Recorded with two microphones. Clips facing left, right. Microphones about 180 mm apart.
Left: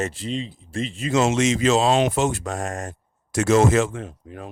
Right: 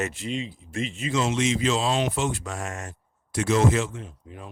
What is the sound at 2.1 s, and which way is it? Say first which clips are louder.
Speech: left 5 dB; 40° left (ahead or behind).